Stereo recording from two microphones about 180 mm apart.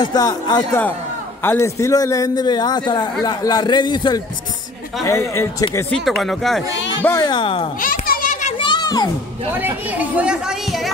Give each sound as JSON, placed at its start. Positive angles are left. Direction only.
{"t": 0.0, "sound": "a man's voice", "side_deg": 20}
{"t": 6.0, "sound": "speech", "side_deg": 0}
{"t": 7.2, "sound": "a man's voice", "side_deg": 25}
{"t": 7.8, "sound": "children playing", "side_deg": 50}
{"t": 8.5, "sound": "a sound", "side_deg": 25}
{"t": 9.6, "sound": "speech", "side_deg": -10}